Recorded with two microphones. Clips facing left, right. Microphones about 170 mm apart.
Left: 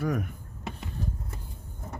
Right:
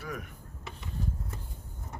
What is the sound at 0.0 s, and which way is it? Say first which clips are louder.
Speech: left 10 dB; 45° left (ahead or behind).